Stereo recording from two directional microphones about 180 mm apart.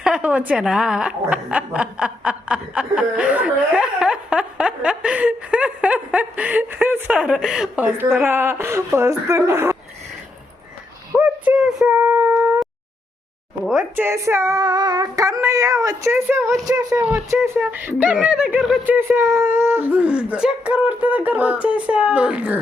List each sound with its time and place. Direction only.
0.0 s a woman's voice: 5° right (ahead or behind)
11.1 s child singing: 5° right (ahead or behind)
13.7 s a woman's voice: 5° right (ahead or behind)